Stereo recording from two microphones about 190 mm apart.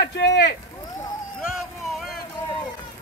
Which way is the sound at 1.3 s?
Centre (ahead or behind).